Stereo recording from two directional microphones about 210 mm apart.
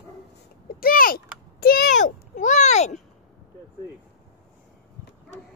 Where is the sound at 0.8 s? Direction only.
45° left (ahead or behind).